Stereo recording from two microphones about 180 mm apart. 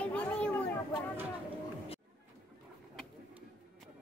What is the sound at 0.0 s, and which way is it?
Children playing, 5° left (ahead or behind).